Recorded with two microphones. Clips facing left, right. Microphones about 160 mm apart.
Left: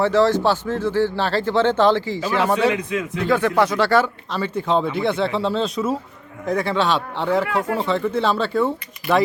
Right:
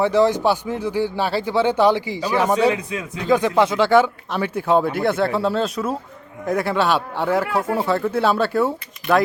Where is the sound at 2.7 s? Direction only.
35° right (ahead or behind).